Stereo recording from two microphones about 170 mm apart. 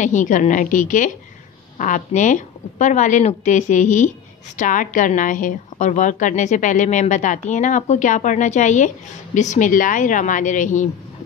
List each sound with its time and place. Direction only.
0.0 s a woman's voice: 45° left (ahead or behind)